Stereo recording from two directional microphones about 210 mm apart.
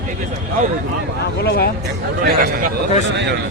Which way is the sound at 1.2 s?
50° left (ahead or behind).